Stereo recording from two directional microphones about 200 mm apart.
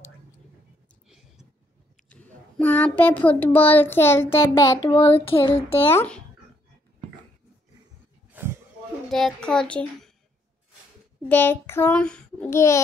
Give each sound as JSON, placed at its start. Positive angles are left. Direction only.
{"t": 1.0, "sound": "a sound", "side_deg": 0}
{"t": 2.0, "sound": "a child's voice", "side_deg": 5}
{"t": 5.9, "sound": "a child's voice", "side_deg": 10}
{"t": 9.1, "sound": "a child's voice", "side_deg": 5}
{"t": 11.2, "sound": "a child's voice", "side_deg": 10}